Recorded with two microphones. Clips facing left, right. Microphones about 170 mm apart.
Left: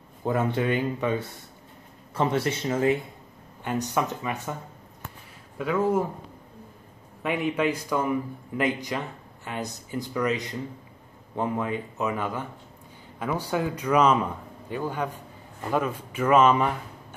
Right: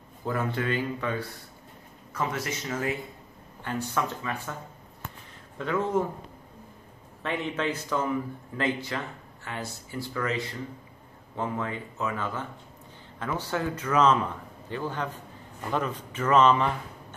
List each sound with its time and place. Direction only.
0.2 s speech: 25° left (ahead or behind)
3.6 s speech: 15° left (ahead or behind)
5.6 s speech: 10° left (ahead or behind)
7.2 s speech: 10° left (ahead or behind)